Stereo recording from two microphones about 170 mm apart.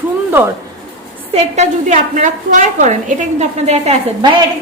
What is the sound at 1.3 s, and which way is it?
A woman's voice, 40° right (ahead or behind).